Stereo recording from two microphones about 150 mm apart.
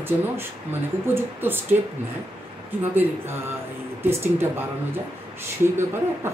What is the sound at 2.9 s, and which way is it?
Speech, 15° right (ahead or behind).